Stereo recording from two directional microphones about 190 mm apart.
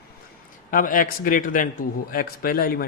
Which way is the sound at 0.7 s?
45° left (ahead or behind).